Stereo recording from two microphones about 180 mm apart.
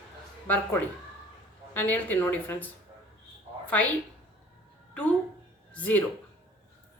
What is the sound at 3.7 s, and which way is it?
Speech, 10° left (ahead or behind).